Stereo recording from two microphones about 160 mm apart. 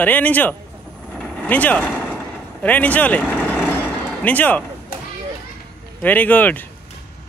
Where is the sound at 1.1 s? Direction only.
5° left (ahead or behind).